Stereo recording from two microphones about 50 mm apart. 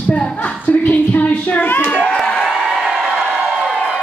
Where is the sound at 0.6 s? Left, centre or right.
Left.